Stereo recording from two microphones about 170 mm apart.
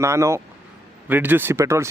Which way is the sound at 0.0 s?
15° right (ahead or behind).